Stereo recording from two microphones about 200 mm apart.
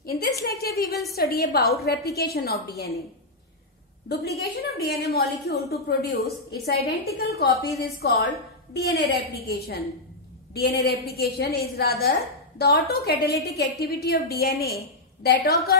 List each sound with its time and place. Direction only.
0.0 s a woman's voice: 50° left (ahead or behind)
4.4 s a woman's voice: 50° left (ahead or behind)